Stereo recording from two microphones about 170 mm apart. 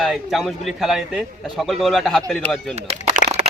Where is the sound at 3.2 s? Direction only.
45° left (ahead or behind).